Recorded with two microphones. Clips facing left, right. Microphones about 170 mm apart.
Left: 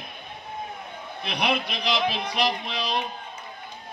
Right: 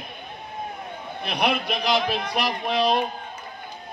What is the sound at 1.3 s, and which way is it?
A man's voice, 50° right (ahead or behind).